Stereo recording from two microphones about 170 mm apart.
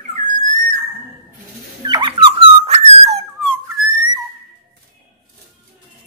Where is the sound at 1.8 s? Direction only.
25° right (ahead or behind).